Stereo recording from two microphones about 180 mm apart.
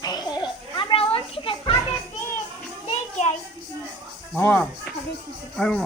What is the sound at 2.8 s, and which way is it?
Children playing, 40° left (ahead or behind).